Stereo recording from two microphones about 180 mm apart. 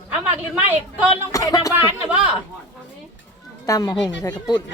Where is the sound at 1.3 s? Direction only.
20° left (ahead or behind).